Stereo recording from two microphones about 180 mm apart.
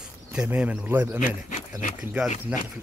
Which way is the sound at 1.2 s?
45° left (ahead or behind).